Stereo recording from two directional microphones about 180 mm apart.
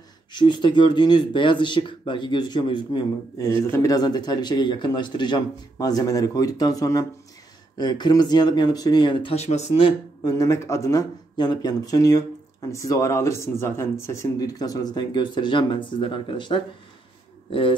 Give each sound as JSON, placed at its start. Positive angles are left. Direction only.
{"t": 0.3, "sound": "speech", "side_deg": 25}
{"t": 10.2, "sound": "speech", "side_deg": 15}